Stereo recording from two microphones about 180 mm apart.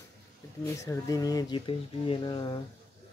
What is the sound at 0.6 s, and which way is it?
Speech, 15° left (ahead or behind).